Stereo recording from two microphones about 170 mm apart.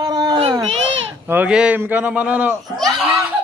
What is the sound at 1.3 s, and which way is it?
A man's voice, 10° right (ahead or behind).